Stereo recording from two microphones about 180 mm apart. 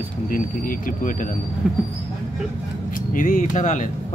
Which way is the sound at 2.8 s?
45° left (ahead or behind).